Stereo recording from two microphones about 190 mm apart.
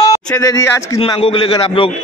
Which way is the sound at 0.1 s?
20° left (ahead or behind).